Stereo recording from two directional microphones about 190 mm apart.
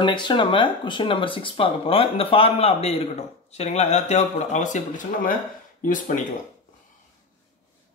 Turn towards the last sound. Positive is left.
turn(degrees=45)  # may be behind; listen again after turning